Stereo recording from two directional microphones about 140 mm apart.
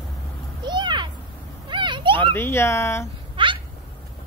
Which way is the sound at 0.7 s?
35° right (ahead or behind).